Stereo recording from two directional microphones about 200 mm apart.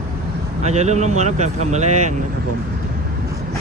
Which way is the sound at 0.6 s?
35° right (ahead or behind).